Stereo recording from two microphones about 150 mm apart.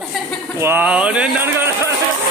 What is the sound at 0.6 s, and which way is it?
A man's voice, 15° right (ahead or behind).